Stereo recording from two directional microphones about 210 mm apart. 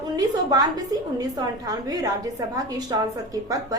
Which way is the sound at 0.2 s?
15° right (ahead or behind).